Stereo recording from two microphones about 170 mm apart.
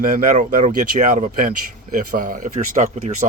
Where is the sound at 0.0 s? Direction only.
55° right (ahead or behind).